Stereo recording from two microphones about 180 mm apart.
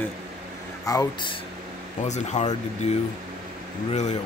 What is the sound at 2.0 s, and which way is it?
Speech, 40° left (ahead or behind).